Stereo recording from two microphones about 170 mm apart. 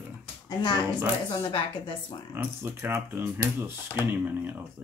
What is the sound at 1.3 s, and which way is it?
Speech, 30° left (ahead or behind).